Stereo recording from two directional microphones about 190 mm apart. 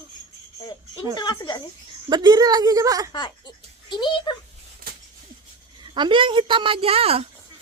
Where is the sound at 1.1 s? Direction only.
20° left (ahead or behind).